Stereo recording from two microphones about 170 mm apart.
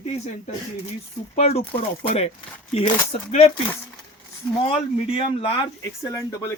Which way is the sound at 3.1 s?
40° left (ahead or behind).